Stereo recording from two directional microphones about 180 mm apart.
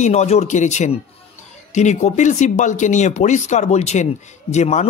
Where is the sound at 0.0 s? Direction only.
40° left (ahead or behind).